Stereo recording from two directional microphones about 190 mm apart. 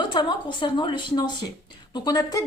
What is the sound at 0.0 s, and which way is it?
Speech, 25° left (ahead or behind).